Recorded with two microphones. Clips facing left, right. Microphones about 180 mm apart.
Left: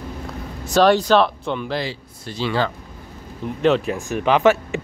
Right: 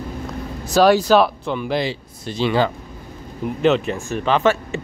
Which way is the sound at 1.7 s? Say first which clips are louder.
Right 4 dB; 20° right (ahead or behind).